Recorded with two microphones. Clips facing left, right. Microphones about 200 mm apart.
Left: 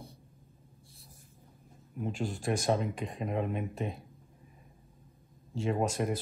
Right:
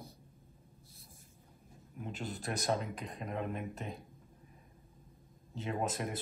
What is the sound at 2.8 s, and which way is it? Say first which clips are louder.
Speech: left 7 dB; centre (ahead or behind).